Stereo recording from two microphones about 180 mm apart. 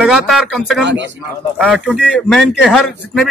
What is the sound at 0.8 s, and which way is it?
Speech, 80° right.